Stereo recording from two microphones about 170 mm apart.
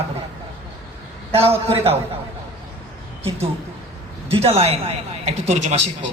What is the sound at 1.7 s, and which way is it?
Speech, 35° right (ahead or behind).